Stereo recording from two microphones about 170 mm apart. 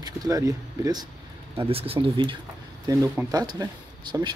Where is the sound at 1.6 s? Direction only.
35° right (ahead or behind).